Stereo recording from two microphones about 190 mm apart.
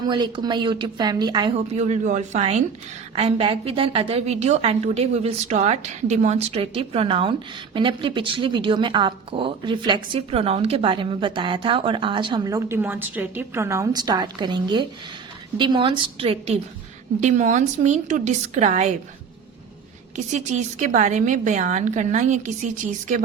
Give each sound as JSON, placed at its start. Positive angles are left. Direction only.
{"t": 0.0, "sound": "a woman's voice", "side_deg": -25}
{"t": 1.5, "sound": "a woman's voice", "side_deg": -35}
{"t": 20.1, "sound": "a woman's voice", "side_deg": -40}